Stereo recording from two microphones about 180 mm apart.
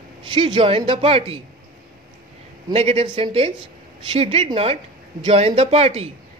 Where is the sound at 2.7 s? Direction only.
35° right (ahead or behind).